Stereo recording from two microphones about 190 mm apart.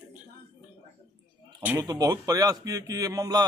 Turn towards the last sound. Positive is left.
turn(degrees=-20)  # may be behind; listen again after turning